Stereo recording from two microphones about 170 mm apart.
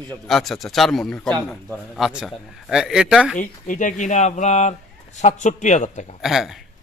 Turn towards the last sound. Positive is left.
turn(degrees=0)  # may be behind; listen again after turning